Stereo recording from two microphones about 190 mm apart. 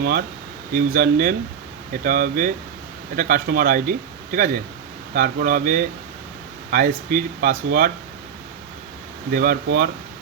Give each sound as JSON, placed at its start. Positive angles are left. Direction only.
{"t": 0.0, "sound": "speech", "side_deg": -50}
{"t": 9.3, "sound": "speech", "side_deg": -55}